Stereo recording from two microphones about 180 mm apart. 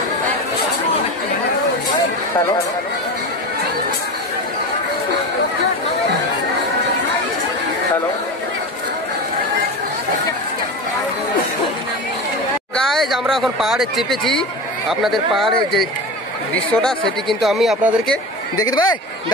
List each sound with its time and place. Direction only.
12.7 s speech: centre (ahead or behind)
18.6 s speech: 20° left (ahead or behind)